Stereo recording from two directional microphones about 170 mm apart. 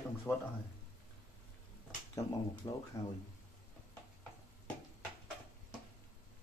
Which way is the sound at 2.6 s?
25° left (ahead or behind).